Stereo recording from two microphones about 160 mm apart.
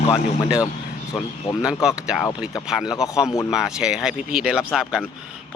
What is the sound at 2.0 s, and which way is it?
Speech, 5° right (ahead or behind).